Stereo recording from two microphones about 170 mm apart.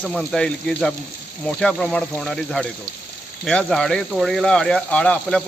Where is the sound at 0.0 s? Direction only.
Centre (ahead or behind).